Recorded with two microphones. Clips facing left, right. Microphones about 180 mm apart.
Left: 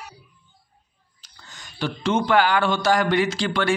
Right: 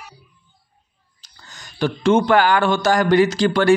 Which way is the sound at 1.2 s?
40° right (ahead or behind).